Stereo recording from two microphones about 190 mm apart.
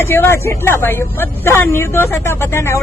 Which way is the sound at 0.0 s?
10° left (ahead or behind).